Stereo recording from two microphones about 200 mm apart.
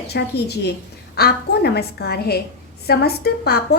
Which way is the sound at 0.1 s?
55° left (ahead or behind).